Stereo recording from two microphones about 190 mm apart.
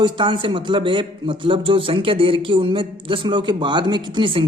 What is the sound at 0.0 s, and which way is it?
A man's voice, 25° right (ahead or behind).